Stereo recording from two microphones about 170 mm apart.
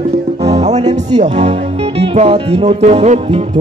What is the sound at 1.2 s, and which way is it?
Speech, 40° right (ahead or behind).